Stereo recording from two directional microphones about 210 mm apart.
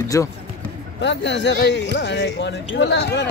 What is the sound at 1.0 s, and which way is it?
Speech, 55° left (ahead or behind).